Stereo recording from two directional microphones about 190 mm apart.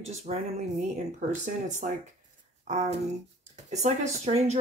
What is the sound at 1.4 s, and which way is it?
Speech, 40° right (ahead or behind).